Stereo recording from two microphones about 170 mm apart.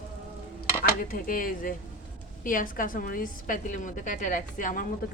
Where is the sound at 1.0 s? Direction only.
55° left (ahead or behind).